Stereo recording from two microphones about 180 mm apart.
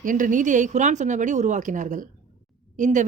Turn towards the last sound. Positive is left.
turn(degrees=-45)  # may be behind; listen again after turning